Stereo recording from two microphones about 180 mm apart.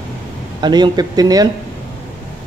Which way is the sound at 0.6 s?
25° right (ahead or behind).